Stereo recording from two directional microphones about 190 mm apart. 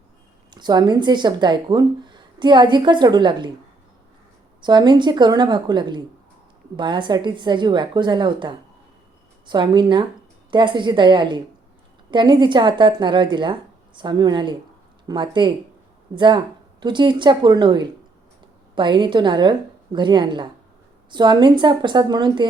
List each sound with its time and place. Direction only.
0.5 s speech: 20° right (ahead or behind)
4.6 s speech: 25° right (ahead or behind)